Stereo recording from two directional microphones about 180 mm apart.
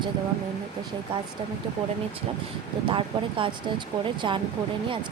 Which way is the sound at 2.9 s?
30° right (ahead or behind).